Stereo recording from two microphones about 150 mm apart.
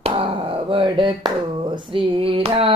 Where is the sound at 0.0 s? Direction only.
40° right (ahead or behind).